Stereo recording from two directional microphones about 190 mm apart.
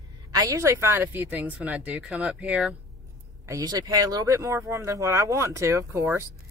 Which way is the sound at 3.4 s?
20° right (ahead or behind).